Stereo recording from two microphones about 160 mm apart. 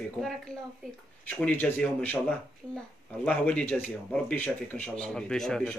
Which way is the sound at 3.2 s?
10° left (ahead or behind).